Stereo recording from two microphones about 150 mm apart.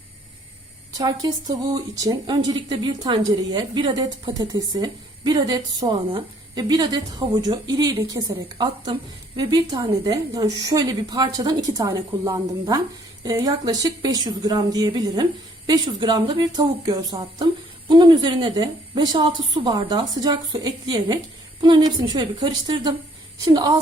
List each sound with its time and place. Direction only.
0.9 s a woman's voice: 25° right (ahead or behind)